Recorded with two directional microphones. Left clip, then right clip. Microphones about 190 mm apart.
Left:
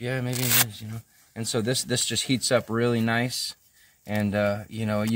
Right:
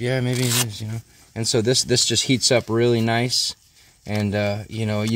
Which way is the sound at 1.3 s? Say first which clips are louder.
Right 7 dB; 35° right (ahead or behind).